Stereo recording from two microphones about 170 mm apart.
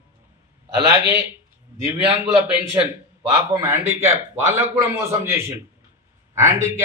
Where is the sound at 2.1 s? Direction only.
20° right (ahead or behind).